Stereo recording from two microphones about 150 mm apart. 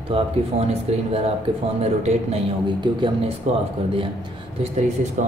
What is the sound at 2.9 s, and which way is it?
Speech, 30° right (ahead or behind).